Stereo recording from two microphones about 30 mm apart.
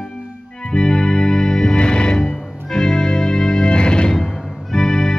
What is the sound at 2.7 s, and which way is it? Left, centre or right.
Organ, centre.